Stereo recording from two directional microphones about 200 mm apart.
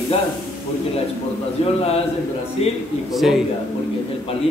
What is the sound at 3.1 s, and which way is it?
Speech, centre (ahead or behind).